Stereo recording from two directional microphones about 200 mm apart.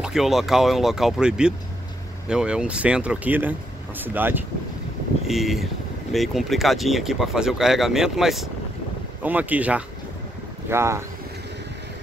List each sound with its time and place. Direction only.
0.0 s speech: centre (ahead or behind)